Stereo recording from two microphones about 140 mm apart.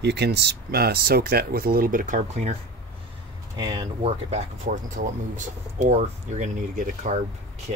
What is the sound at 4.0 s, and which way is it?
Speech, 50° right (ahead or behind).